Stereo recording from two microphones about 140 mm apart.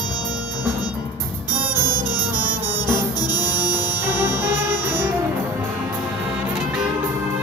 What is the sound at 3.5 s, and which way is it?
Music, 15° right (ahead or behind).